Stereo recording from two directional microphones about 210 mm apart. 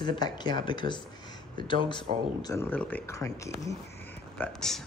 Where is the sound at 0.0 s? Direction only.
20° left (ahead or behind).